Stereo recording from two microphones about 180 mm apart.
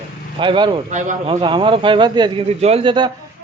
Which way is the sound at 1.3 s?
25° right (ahead or behind).